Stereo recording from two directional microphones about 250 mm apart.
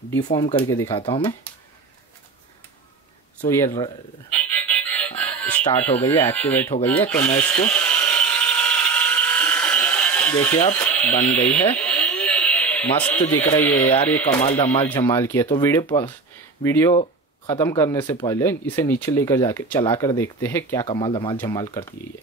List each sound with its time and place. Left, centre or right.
0.2 s speech: centre
3.4 s music: centre
5.6 s speech: left
5.9 s speech: centre
6.8 s mechanisms: centre
10.8 s speech: centre
11.7 s a sound: centre
13.3 s speech: centre